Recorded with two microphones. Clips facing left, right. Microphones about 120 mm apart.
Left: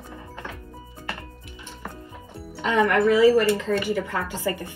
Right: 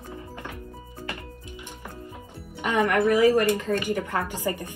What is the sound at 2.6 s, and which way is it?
A woman's voice, 15° right (ahead or behind).